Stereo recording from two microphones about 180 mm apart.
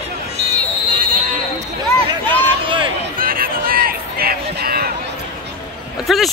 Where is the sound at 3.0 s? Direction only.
55° right (ahead or behind).